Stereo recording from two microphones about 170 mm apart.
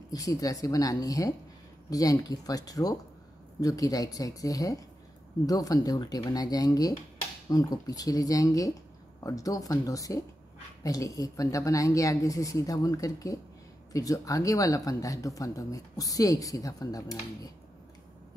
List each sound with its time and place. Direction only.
0.1 s speech: 20° left (ahead or behind)